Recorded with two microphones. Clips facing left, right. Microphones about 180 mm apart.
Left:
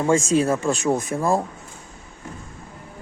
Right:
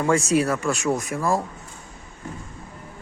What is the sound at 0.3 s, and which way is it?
Speech, 25° left (ahead or behind).